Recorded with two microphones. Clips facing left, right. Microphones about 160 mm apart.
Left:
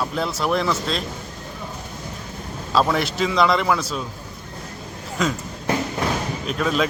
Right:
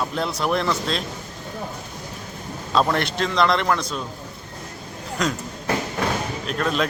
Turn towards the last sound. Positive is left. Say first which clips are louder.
# left 1 dB
turn(degrees=0)  # may be behind; listen again after turning